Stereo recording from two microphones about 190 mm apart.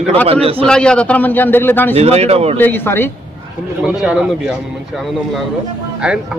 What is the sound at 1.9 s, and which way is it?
Speech, 35° right (ahead or behind).